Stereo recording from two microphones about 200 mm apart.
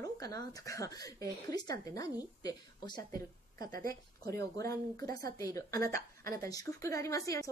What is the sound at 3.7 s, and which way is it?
Speech, 45° right (ahead or behind).